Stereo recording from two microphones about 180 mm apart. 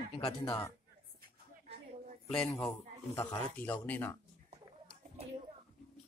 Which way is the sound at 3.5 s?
10° left (ahead or behind).